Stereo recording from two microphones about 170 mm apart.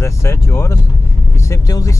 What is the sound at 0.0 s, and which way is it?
Speech, 15° left (ahead or behind).